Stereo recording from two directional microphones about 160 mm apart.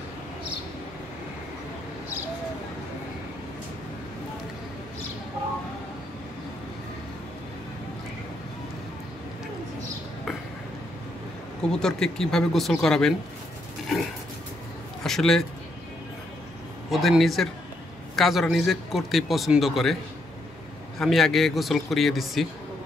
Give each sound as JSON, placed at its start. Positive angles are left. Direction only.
{"t": 11.7, "sound": "a man's voice", "side_deg": 5}
{"t": 15.0, "sound": "a man's voice", "side_deg": 5}
{"t": 16.9, "sound": "a man's voice", "side_deg": 0}
{"t": 21.0, "sound": "a man's voice", "side_deg": 0}